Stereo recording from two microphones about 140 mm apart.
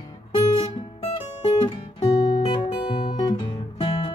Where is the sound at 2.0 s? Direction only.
30° left (ahead or behind).